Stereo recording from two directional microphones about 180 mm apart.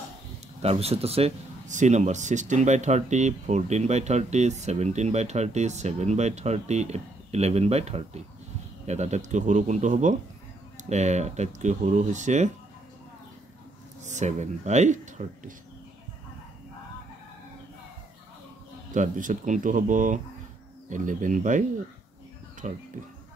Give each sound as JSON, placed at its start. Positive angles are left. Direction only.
{"t": 0.6, "sound": "speech", "side_deg": -35}
{"t": 14.0, "sound": "speech", "side_deg": -40}
{"t": 18.9, "sound": "speech", "side_deg": -45}